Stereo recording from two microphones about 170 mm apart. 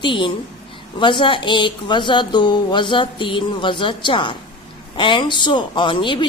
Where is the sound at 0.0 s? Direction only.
30° left (ahead or behind).